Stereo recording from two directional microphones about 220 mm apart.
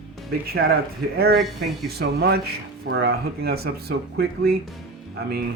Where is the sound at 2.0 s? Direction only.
45° right (ahead or behind).